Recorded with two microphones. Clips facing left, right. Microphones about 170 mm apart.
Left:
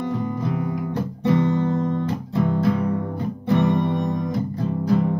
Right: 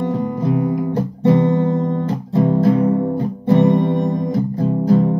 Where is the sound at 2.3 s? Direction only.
40° right (ahead or behind).